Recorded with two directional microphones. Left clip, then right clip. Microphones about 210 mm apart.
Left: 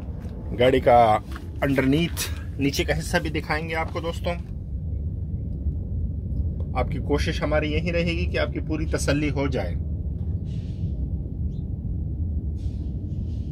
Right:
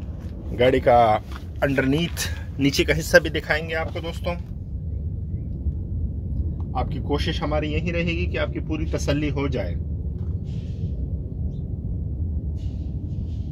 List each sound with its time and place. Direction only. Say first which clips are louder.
0.6 s a man's voice: even; centre (ahead or behind)
2.6 s speech: right 4 dB; 35° right (ahead or behind)
3.9 s speech: left 1 dB; 10° right (ahead or behind)
6.7 s a man's voice: left 1 dB; centre (ahead or behind)